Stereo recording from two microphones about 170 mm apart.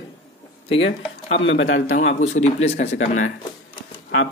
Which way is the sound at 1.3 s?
90° left.